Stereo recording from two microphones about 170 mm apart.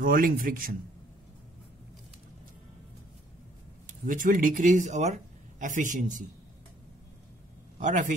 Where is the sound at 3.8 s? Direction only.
50° right (ahead or behind).